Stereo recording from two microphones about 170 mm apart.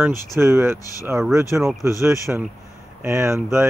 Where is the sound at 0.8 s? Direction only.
20° left (ahead or behind).